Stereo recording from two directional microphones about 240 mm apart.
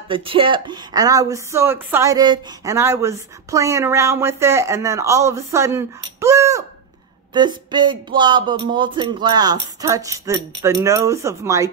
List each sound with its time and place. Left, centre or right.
0.1 s speech: right